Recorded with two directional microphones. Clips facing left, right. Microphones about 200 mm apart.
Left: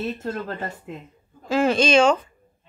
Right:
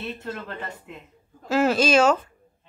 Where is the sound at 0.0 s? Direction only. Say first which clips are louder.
Left 5 dB; 40° left (ahead or behind).